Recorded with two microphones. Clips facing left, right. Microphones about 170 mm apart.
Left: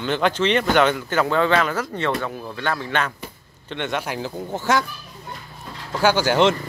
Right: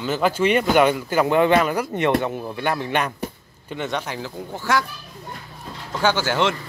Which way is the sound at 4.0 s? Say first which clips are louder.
Left 2 dB; 15° left (ahead or behind).